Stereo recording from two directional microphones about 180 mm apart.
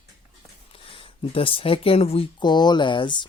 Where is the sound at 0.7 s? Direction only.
30° left (ahead or behind).